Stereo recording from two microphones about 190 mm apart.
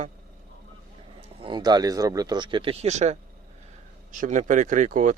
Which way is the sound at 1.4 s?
20° right (ahead or behind).